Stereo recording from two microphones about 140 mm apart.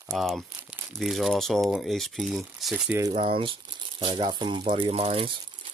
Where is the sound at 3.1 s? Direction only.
40° right (ahead or behind).